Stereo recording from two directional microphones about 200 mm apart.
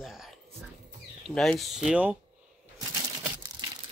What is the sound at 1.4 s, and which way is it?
Speech, centre (ahead or behind).